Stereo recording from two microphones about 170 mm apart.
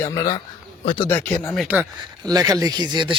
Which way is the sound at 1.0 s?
10° left (ahead or behind).